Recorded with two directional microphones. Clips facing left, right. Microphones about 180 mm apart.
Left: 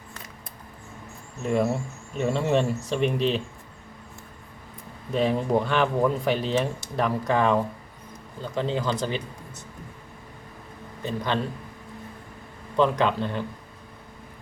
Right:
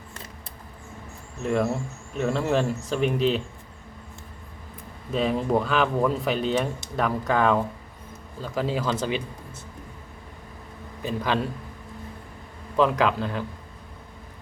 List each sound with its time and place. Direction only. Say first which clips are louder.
1.4 s speech: even; centre (ahead or behind)
5.1 s speech: even; centre (ahead or behind)
12.7 s speech: even; 5° right (ahead or behind)